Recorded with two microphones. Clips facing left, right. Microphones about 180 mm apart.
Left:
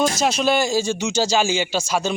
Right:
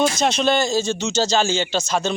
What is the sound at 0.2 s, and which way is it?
Speech, 5° left (ahead or behind).